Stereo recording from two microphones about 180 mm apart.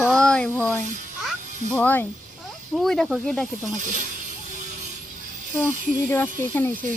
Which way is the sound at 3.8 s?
45° right (ahead or behind).